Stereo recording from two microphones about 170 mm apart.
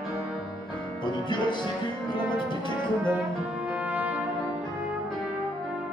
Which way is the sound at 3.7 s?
10° right (ahead or behind).